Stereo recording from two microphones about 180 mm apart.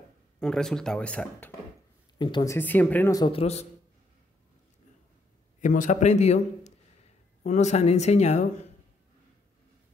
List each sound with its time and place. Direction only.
0.4 s speech: 5° left (ahead or behind)
2.1 s speech: 25° left (ahead or behind)
2.5 s speech: 10° left (ahead or behind)
3.3 s speech: 35° left (ahead or behind)
5.6 s speech: 45° left (ahead or behind)